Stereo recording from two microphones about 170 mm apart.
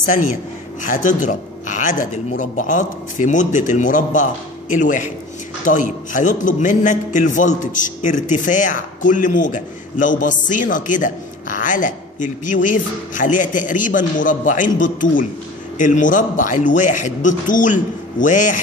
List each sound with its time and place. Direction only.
0.8 s a man's voice: 50° left (ahead or behind)